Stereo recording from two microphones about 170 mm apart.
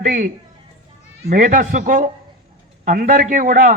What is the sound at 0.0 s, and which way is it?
Speech, 50° right (ahead or behind).